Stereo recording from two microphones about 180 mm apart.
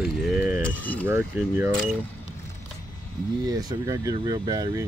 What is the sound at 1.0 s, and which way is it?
Speech, 10° right (ahead or behind).